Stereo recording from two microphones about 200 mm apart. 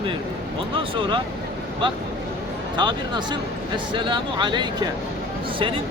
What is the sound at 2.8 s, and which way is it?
Speech, 20° right (ahead or behind).